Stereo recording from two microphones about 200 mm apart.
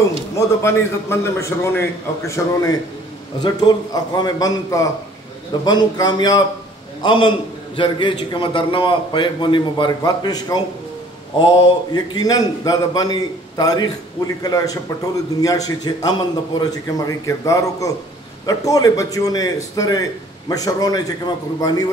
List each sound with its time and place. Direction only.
0.6 s a man's voice: 15° left (ahead or behind)